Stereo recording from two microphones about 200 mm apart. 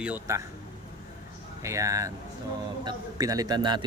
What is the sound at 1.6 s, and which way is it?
A man's voice, 15° right (ahead or behind).